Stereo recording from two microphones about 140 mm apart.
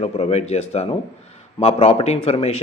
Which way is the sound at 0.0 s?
45° left (ahead or behind).